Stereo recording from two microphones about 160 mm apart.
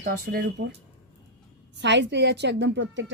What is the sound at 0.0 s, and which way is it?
Speech, 70° right (ahead or behind).